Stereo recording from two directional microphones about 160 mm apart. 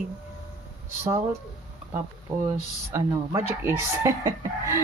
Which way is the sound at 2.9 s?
15° right (ahead or behind).